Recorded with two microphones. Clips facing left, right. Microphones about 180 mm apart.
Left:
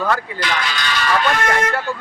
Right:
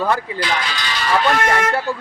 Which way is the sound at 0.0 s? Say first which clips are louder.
Right 1 dB; 30° right (ahead or behind).